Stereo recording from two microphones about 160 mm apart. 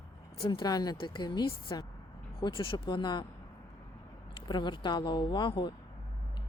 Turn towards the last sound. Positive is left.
turn(degrees=30)  # may be behind; listen again after turning